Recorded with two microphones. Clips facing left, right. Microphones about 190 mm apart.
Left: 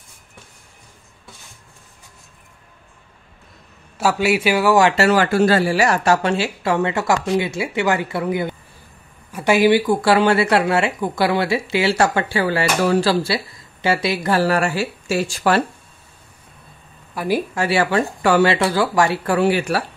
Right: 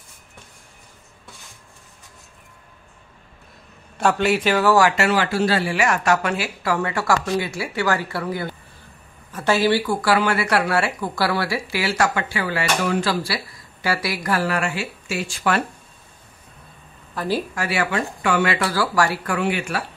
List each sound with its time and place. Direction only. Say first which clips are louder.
4.0 s a man's voice: left 1 dB; 10° left (ahead or behind)
4.9 s speech: left 4 dB; 40° left (ahead or behind)
17.1 s speech: left 3 dB; 10° left (ahead or behind)
17.6 s speech: left 5 dB; 30° left (ahead or behind)